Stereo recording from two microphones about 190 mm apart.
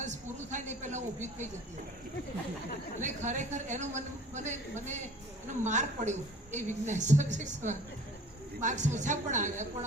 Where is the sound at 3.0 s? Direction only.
40° right (ahead or behind).